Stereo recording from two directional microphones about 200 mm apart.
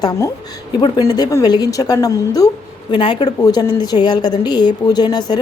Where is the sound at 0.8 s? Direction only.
20° left (ahead or behind).